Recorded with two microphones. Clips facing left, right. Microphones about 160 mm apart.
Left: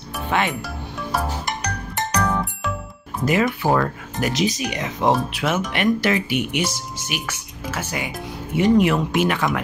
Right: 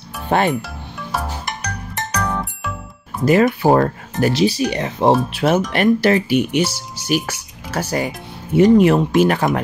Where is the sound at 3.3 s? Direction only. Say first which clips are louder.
Right 6 dB; 40° right (ahead or behind).